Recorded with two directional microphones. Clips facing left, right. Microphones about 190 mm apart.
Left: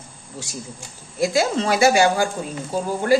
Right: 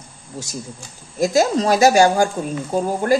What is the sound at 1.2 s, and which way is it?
A woman's voice, 40° right (ahead or behind).